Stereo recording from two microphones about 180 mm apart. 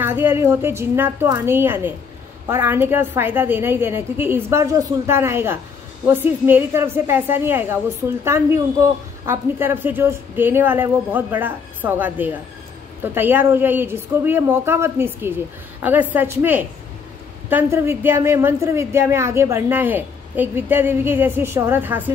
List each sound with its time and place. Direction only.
0.0 s a woman's voice: 10° right (ahead or behind)